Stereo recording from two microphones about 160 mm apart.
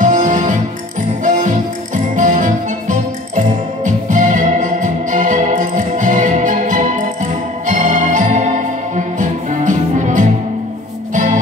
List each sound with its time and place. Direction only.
0.0 s music: 55° right (ahead or behind)